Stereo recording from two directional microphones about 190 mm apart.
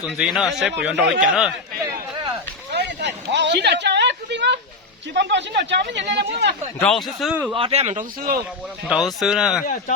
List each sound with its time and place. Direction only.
0.0 s speech: 5° right (ahead or behind)
1.8 s a sound: 20° right (ahead or behind)
2.7 s a sound: 65° right (ahead or behind)
5.1 s speech: 65° right (ahead or behind)
7.2 s speech: 5° right (ahead or behind)
7.5 s speech: 30° right (ahead or behind)
8.9 s speech: centre (ahead or behind)